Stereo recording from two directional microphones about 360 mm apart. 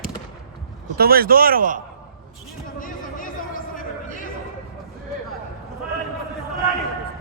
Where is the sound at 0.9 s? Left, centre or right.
Right.